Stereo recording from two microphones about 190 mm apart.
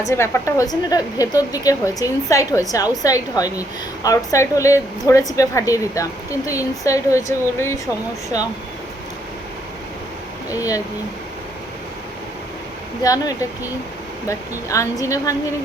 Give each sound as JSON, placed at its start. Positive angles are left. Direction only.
{"t": 0.1, "sound": "a woman's voice", "side_deg": 15}
{"t": 13.0, "sound": "a woman's voice", "side_deg": 20}